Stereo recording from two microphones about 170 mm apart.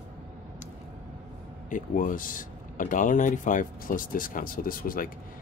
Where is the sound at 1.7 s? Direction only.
50° left (ahead or behind).